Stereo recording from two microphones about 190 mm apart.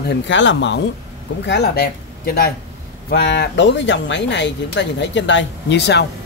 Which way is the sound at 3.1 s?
60° left (ahead or behind).